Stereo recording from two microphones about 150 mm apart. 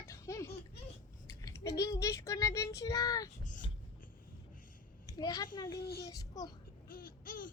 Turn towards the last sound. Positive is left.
turn(degrees=65)  # may be behind; listen again after turning